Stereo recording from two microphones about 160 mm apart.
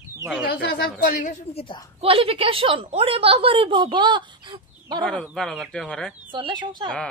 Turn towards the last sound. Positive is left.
turn(degrees=-30)  # may be behind; listen again after turning